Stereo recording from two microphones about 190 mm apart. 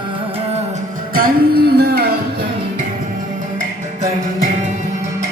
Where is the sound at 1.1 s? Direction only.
50° right (ahead or behind).